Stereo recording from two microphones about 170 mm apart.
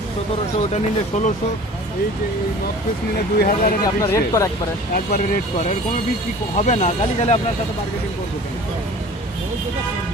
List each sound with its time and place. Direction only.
0.7 s speech: 45° left (ahead or behind)
3.3 s speech: 60° left (ahead or behind)
4.0 s speech: 20° left (ahead or behind)
4.9 s speech: 60° left (ahead or behind)
6.6 s speech: 45° left (ahead or behind)